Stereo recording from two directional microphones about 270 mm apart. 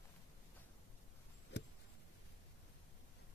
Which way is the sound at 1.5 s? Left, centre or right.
Left.